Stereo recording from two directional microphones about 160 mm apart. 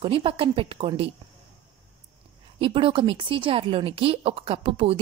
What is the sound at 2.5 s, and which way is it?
A woman's voice, 30° right (ahead or behind).